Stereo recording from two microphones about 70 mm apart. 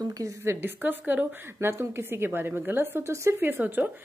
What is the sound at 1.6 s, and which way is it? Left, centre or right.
Speech, right.